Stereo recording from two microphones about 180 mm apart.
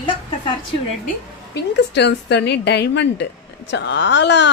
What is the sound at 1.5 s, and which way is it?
A woman's voice, 70° left (ahead or behind).